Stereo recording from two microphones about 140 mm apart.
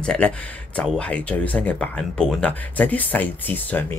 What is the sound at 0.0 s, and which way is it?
Speech, 5° left (ahead or behind).